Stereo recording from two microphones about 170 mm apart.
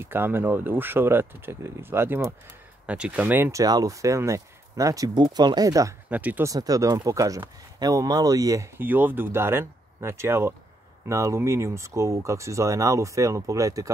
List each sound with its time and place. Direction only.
0.0 s speech: 15° right (ahead or behind)
6.0 s speech: 10° right (ahead or behind)
6.5 s speech: 20° right (ahead or behind)